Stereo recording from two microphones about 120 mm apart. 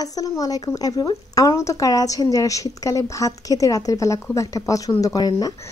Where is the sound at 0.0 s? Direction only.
30° left (ahead or behind).